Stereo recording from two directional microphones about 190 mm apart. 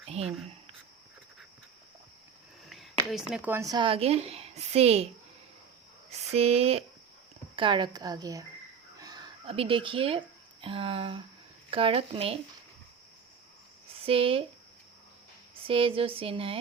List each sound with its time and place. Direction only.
0.1 s speech: 35° right (ahead or behind)
2.6 s speech: centre (ahead or behind); by 5.0 s 35° right (ahead or behind)
6.1 s a woman's voice: 35° right (ahead or behind)
14.0 s speech: 30° right (ahead or behind)
15.6 s a woman's voice: 30° right (ahead or behind)